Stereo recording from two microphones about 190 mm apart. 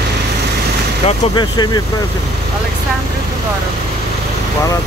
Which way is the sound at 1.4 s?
20° left (ahead or behind).